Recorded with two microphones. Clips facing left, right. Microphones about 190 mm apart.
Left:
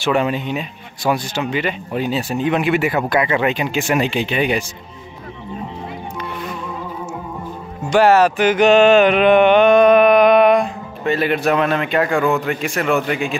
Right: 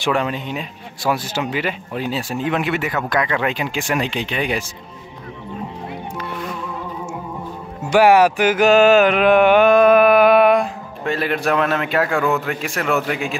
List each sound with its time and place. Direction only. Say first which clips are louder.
0.1 s music: left 3 dB; 5° left (ahead or behind)
7.8 s music: even; 10° right (ahead or behind)